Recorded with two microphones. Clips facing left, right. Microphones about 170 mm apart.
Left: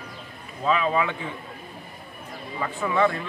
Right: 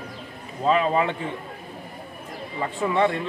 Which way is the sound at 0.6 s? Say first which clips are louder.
Right 2 dB; 35° right (ahead or behind).